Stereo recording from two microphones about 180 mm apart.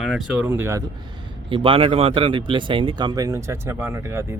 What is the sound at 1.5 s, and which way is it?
Speech, 30° right (ahead or behind).